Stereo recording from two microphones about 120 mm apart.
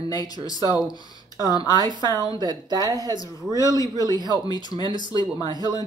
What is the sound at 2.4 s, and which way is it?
Speech, 35° right (ahead or behind).